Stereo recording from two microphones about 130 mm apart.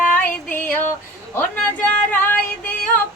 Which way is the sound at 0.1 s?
15° left (ahead or behind).